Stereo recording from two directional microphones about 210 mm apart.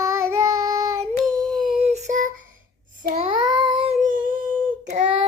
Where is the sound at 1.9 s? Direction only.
30° right (ahead or behind).